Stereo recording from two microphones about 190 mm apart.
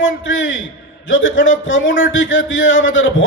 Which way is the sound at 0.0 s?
80° left.